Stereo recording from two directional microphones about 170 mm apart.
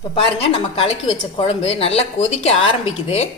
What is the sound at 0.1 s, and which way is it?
Speech, 35° left (ahead or behind).